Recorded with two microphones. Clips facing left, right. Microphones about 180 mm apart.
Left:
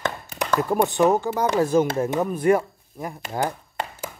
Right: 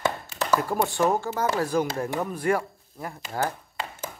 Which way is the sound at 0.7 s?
20° left (ahead or behind).